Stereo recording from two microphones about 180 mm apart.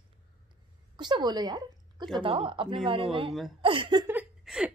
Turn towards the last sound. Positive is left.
turn(degrees=-5)  # may be behind; listen again after turning